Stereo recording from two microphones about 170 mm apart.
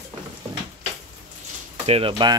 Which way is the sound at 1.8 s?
35° right (ahead or behind).